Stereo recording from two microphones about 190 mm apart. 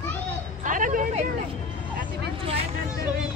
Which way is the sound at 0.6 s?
45° right (ahead or behind).